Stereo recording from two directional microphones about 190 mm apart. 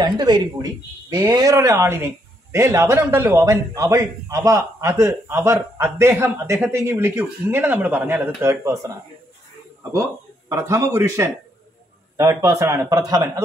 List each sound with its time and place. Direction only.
0.0 s a man's voice: 20° right (ahead or behind)
10.5 s a man's voice: 15° right (ahead or behind)